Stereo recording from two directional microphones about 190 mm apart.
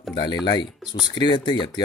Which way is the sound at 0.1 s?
20° left (ahead or behind).